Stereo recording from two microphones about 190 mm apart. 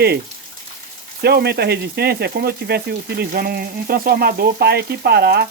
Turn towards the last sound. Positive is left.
turn(degrees=-60)  # may be behind; listen again after turning